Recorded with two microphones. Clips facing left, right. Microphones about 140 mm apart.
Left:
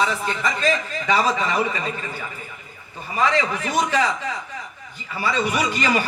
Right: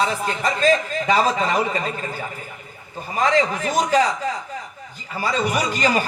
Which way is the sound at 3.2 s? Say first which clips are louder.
Right 2 dB; 40° right (ahead or behind).